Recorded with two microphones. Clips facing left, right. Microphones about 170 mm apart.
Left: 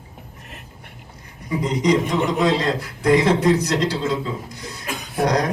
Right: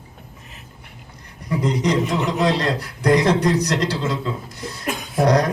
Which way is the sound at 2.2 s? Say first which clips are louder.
Left 1 dB; 50° left (ahead or behind).